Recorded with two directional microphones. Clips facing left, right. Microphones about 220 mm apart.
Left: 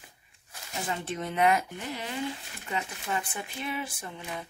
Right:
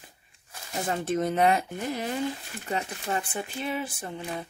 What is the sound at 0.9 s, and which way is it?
Speech, 45° right (ahead or behind).